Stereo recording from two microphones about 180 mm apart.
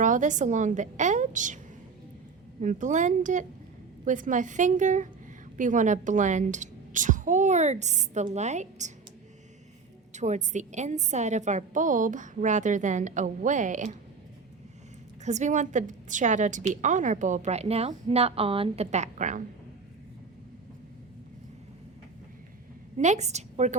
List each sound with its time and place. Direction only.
0.0 s a woman's voice: 45° right (ahead or behind)
2.6 s a woman's voice: 45° right (ahead or behind)
10.1 s a woman's voice: 40° right (ahead or behind)
15.2 s a woman's voice: 40° right (ahead or behind)
23.0 s a woman's voice: 40° right (ahead or behind)